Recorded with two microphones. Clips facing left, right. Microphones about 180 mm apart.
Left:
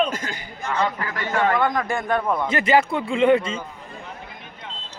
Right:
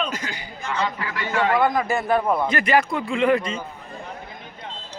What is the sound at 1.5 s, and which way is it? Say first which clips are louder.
Speech: right 2 dB; 10° right (ahead or behind).